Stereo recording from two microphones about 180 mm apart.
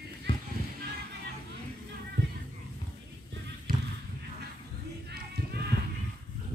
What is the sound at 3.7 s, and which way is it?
Basketball bounce, 55° right (ahead or behind).